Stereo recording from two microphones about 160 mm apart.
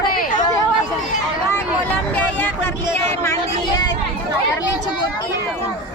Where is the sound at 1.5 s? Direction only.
10° left (ahead or behind).